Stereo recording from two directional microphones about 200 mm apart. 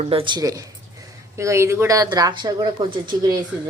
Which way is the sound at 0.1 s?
25° right (ahead or behind).